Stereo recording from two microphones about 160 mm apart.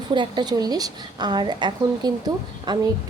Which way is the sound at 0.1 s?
30° right (ahead or behind).